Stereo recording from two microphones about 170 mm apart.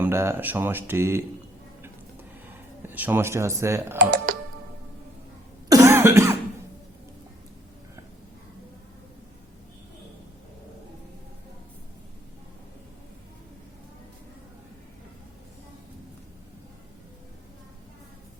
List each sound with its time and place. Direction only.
0.0 s speech: 15° right (ahead or behind)
2.8 s speech: 10° right (ahead or behind)
3.9 s speech: 55° right (ahead or behind)
5.6 s cough: 20° right (ahead or behind)